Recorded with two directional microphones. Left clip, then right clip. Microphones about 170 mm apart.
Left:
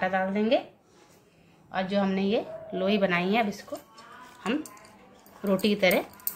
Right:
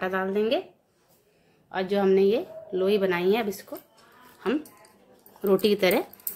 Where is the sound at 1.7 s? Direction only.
70° right (ahead or behind).